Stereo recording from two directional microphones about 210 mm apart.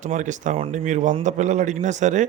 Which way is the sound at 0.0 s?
35° right (ahead or behind).